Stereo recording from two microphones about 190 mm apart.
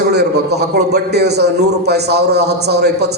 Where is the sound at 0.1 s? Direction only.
60° right (ahead or behind).